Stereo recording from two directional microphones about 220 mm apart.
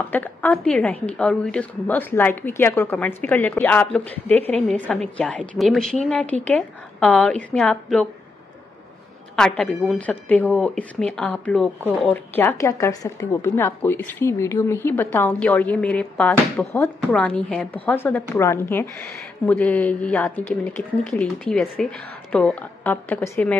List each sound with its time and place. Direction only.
0.1 s a woman's voice: 5° left (ahead or behind)
9.3 s a woman's voice: 5° left (ahead or behind)